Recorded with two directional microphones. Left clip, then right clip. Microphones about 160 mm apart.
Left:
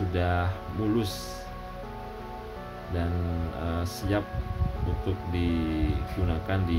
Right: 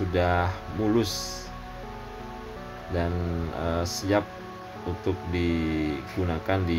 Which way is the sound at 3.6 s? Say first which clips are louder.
Right 6 dB; 15° right (ahead or behind).